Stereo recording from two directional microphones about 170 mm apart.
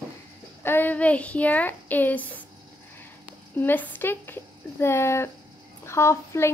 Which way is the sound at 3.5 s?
10° left (ahead or behind).